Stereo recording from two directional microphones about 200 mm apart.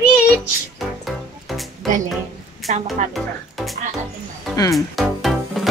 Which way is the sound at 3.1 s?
Centre (ahead or behind).